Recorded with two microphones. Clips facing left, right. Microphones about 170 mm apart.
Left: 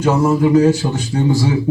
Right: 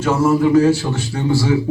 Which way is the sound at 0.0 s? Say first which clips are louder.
Left 1 dB; 15° left (ahead or behind).